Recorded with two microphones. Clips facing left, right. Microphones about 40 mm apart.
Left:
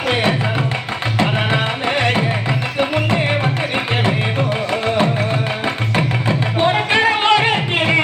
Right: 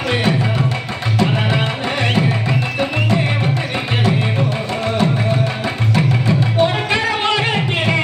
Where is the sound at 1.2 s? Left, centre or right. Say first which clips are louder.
Even; left.